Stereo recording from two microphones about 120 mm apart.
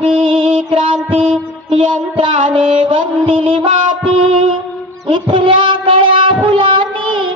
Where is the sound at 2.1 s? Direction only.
45° right (ahead or behind).